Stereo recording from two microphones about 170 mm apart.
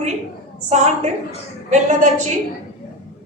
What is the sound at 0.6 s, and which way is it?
Speech, 40° right (ahead or behind).